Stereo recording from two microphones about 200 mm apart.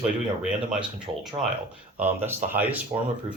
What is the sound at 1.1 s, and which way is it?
Speech, 25° right (ahead or behind).